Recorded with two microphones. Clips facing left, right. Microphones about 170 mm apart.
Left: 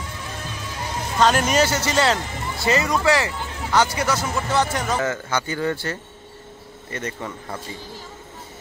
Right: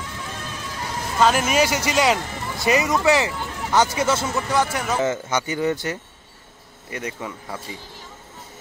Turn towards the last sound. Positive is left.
turn(degrees=-5)  # may be behind; listen again after turning